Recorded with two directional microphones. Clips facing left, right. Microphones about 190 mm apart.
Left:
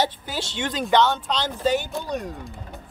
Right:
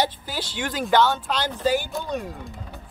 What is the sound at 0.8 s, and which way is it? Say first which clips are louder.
Speech: even; 5° right (ahead or behind).